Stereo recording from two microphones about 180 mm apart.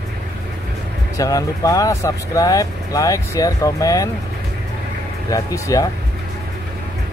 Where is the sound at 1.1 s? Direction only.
20° left (ahead or behind).